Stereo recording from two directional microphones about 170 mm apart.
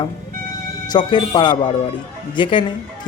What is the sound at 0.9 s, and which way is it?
Music, 30° left (ahead or behind).